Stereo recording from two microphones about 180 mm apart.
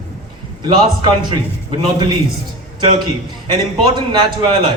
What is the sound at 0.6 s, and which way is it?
Speech, 25° right (ahead or behind).